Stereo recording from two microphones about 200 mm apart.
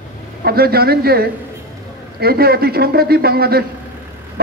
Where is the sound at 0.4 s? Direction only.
50° right (ahead or behind).